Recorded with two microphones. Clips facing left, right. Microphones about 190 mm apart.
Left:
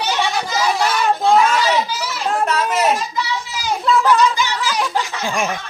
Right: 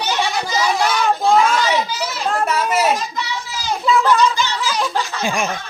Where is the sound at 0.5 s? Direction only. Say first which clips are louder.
Right 1 dB; 5° left (ahead or behind).